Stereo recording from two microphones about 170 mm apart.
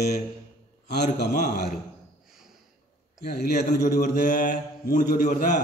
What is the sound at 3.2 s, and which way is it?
Speech, 60° left (ahead or behind).